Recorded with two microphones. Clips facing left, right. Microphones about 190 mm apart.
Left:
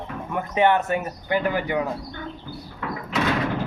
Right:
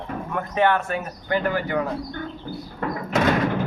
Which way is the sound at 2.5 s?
45° right (ahead or behind).